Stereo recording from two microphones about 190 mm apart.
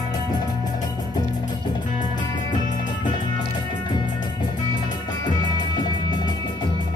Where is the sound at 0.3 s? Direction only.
20° left (ahead or behind).